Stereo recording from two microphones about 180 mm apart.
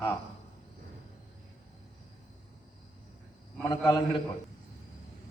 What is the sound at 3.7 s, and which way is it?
Speech, 20° left (ahead or behind).